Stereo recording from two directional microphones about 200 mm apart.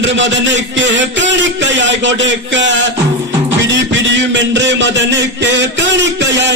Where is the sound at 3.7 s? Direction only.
65° right (ahead or behind).